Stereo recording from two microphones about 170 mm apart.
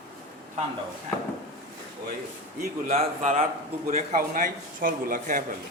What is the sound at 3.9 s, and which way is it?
A man's voice, 45° right (ahead or behind).